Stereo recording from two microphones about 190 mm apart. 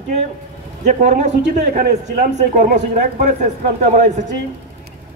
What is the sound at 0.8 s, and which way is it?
Speech, 40° right (ahead or behind).